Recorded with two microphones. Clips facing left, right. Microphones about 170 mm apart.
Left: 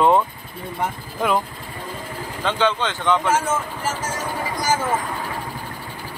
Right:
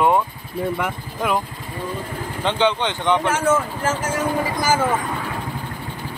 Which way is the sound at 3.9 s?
55° right (ahead or behind).